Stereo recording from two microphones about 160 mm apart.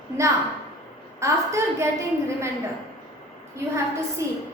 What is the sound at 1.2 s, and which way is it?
Speech, 20° right (ahead or behind).